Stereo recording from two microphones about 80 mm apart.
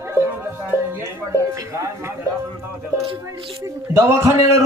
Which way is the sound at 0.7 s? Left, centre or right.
Right.